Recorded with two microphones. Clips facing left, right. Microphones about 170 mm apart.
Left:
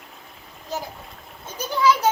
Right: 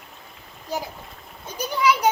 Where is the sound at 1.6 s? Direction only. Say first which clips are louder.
Left 1 dB; 15° right (ahead or behind).